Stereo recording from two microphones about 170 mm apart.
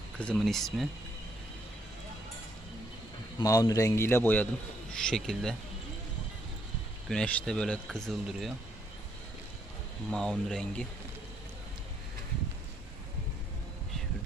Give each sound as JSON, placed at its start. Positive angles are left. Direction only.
{"t": 0.2, "sound": "speech", "side_deg": 5}
{"t": 3.4, "sound": "a man's voice", "side_deg": 20}
{"t": 7.1, "sound": "speech", "side_deg": 5}
{"t": 10.1, "sound": "speech", "side_deg": 5}